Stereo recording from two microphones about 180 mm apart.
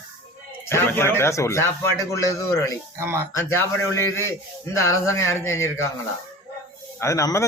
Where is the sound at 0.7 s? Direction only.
15° left (ahead or behind).